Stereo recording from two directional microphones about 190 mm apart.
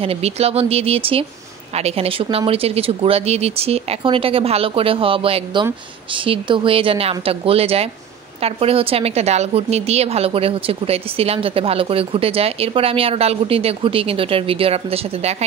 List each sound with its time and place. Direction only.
0.0 s a woman's voice: 30° right (ahead or behind)